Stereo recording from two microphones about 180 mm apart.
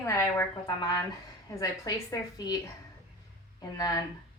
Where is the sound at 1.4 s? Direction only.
20° left (ahead or behind).